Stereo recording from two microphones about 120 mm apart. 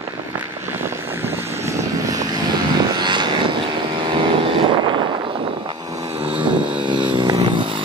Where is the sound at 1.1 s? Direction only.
20° right (ahead or behind).